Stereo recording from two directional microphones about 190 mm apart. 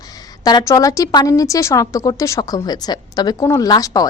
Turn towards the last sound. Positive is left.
turn(degrees=20)  # may be behind; listen again after turning